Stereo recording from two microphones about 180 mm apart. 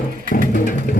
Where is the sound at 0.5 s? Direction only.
50° left (ahead or behind).